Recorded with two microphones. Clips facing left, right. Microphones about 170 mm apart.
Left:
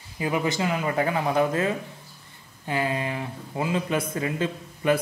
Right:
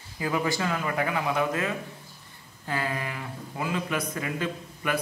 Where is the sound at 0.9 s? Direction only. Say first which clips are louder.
Left 5 dB; 30° left (ahead or behind).